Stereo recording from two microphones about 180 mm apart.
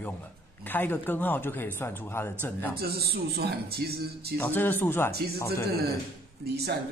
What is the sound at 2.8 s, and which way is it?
A man's voice, 60° right (ahead or behind).